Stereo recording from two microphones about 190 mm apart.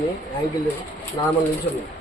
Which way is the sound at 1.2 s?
20° left (ahead or behind).